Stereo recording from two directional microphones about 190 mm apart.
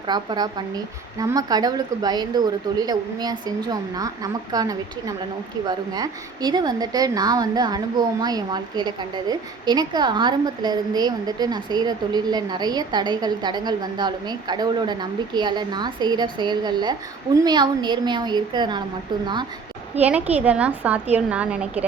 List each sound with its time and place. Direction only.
0.1 s a woman's voice: 20° right (ahead or behind)
20.0 s a woman's voice: 10° right (ahead or behind)